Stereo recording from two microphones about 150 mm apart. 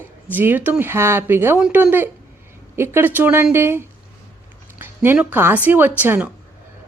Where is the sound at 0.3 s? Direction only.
10° right (ahead or behind).